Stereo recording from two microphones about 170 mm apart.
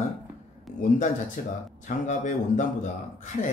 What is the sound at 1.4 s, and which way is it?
A man's voice, 55° left (ahead or behind).